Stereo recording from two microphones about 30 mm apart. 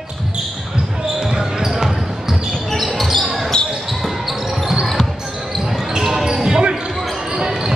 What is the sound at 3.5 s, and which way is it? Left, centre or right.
Basketball bounce, left.